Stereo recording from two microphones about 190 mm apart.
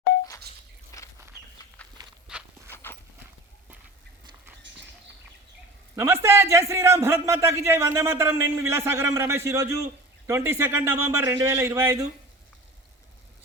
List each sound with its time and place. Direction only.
0.9 s a sound: 15° left (ahead or behind)
1.8 s walk: 5° left (ahead or behind)
2.3 s clip-clop: 5° right (ahead or behind)
2.6 s clip-clop: 10° left (ahead or behind)
6.0 s a man's voice: 15° right (ahead or behind)